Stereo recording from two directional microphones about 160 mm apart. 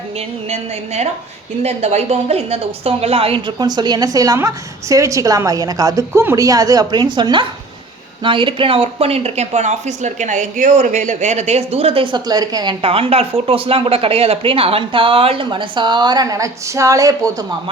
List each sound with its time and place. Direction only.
0.4 s a woman's voice: 40° right (ahead or behind); by 17.4 s 20° right (ahead or behind)